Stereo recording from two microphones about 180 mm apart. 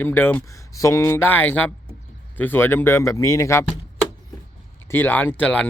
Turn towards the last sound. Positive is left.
turn(degrees=5)  # may be behind; listen again after turning